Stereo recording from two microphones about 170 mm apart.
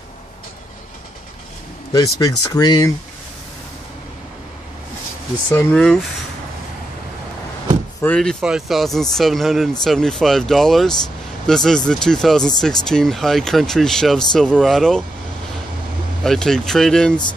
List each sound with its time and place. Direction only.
2.1 s speech: 20° left (ahead or behind)
5.5 s speech: 10° left (ahead or behind)
8.0 s speech: 5° left (ahead or behind)
16.3 s speech: 5° left (ahead or behind)